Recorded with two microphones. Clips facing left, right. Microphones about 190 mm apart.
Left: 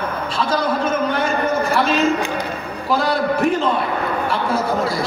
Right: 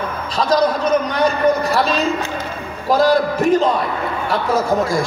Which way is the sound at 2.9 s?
40° right (ahead or behind).